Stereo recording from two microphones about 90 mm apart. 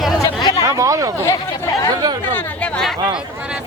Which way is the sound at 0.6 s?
35° right (ahead or behind).